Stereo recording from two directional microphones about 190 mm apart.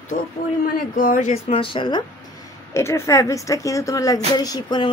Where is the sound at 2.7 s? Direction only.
15° left (ahead or behind).